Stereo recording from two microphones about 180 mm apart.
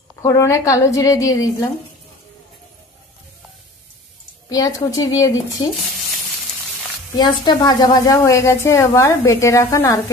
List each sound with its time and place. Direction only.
0.2 s a woman's voice: 15° left (ahead or behind)
4.5 s a woman's voice: 20° left (ahead or behind)
7.2 s a woman's voice: 25° left (ahead or behind)